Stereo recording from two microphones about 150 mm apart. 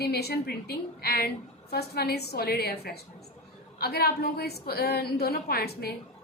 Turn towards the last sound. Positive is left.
turn(degrees=90)